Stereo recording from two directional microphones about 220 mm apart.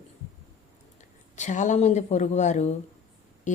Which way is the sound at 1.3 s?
35° left (ahead or behind).